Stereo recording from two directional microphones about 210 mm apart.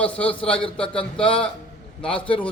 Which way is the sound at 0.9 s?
25° left (ahead or behind).